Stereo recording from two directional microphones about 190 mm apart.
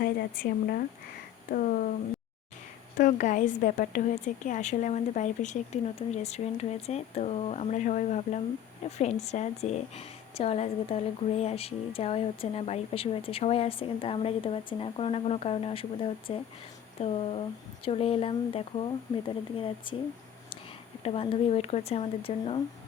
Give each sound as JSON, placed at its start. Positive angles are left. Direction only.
{"t": 0.0, "sound": "speech", "side_deg": 50}
{"t": 3.0, "sound": "speech", "side_deg": 40}
{"t": 21.0, "sound": "speech", "side_deg": 30}